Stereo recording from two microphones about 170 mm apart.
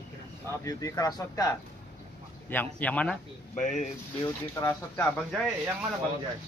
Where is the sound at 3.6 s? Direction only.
45° left (ahead or behind).